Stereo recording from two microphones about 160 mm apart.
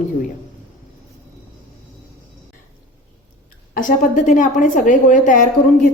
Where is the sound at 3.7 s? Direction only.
55° left (ahead or behind).